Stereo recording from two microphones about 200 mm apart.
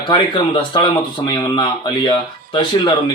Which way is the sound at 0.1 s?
25° left (ahead or behind).